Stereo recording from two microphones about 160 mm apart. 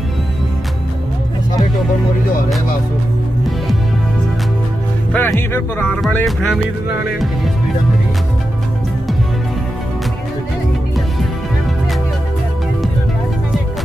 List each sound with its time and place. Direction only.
5.1 s speech: 15° left (ahead or behind)